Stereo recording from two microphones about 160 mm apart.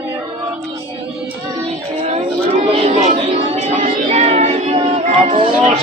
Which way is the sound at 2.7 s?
40° right (ahead or behind).